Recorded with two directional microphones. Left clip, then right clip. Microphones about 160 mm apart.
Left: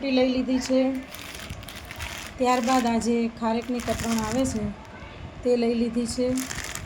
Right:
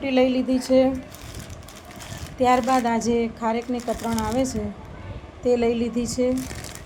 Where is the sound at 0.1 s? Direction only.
45° right (ahead or behind).